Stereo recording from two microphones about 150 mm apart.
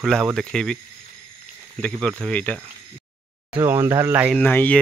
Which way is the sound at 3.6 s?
15° right (ahead or behind).